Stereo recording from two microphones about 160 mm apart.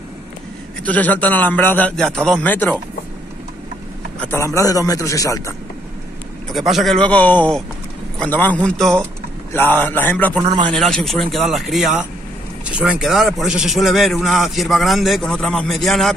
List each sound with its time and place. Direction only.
0.8 s a man's voice: 10° left (ahead or behind)
4.2 s a man's voice: 15° left (ahead or behind)
6.5 s a man's voice: centre (ahead or behind)
10.4 s a man's voice: 30° right (ahead or behind)
10.7 s a man's voice: centre (ahead or behind)